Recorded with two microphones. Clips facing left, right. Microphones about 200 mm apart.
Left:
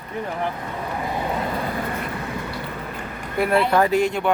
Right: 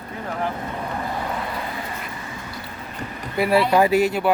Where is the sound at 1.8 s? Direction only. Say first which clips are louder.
Left 5 dB; 60° left (ahead or behind).